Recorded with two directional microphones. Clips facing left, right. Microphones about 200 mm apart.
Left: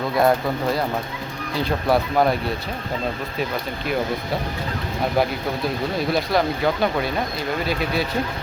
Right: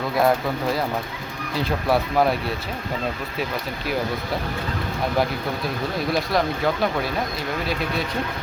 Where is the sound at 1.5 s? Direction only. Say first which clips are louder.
Left 1 dB; centre (ahead or behind).